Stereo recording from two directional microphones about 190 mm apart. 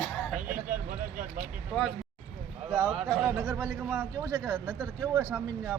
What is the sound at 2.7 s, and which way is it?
Speech, 5° right (ahead or behind).